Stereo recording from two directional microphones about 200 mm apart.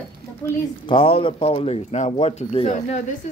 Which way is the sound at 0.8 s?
25° left (ahead or behind).